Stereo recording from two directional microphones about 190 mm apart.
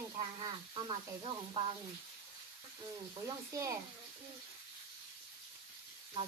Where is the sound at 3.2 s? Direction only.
15° right (ahead or behind).